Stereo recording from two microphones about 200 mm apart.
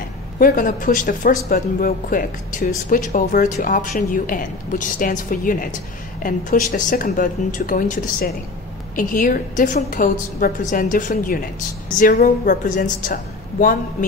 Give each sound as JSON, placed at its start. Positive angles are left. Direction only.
{"t": 0.4, "sound": "a woman's voice", "side_deg": 45}